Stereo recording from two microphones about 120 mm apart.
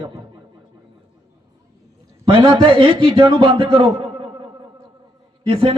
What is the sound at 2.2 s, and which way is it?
A man's voice, 40° right (ahead or behind).